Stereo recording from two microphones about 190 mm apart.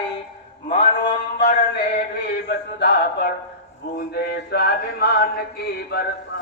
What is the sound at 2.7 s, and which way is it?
Music, 60° left (ahead or behind).